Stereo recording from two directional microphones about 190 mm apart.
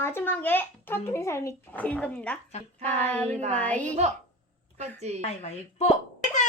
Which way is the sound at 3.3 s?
35° right (ahead or behind).